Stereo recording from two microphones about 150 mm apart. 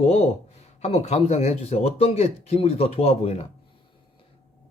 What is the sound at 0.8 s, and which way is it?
A man's voice, 45° left (ahead or behind).